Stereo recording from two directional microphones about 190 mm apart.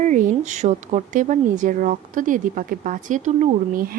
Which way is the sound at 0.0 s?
40° right (ahead or behind).